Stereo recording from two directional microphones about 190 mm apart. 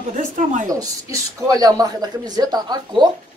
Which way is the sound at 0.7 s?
20° right (ahead or behind).